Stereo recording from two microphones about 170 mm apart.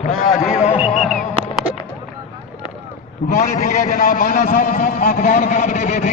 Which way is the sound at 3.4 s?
50° left (ahead or behind).